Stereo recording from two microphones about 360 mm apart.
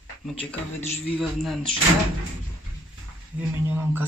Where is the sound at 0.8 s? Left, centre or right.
Centre.